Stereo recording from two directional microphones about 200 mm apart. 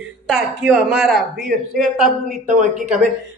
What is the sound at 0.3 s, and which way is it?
Speech, 5° right (ahead or behind).